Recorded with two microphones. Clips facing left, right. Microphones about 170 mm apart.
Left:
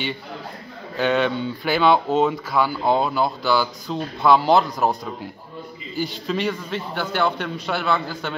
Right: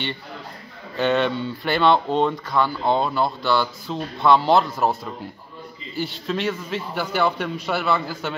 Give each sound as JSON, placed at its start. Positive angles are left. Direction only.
{"t": 0.9, "sound": "speech", "side_deg": 0}